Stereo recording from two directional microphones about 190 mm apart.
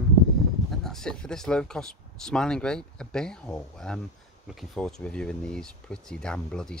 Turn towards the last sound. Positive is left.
turn(degrees=5)  # may be behind; listen again after turning